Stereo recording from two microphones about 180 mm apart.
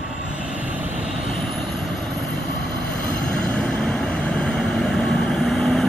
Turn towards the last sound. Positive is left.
turn(degrees=0)  # may be behind; listen again after turning